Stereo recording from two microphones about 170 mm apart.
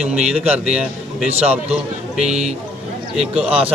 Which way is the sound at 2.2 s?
40° right (ahead or behind).